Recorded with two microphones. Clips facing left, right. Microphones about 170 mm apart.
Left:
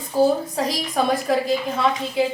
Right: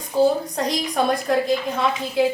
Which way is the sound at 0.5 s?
Centre (ahead or behind).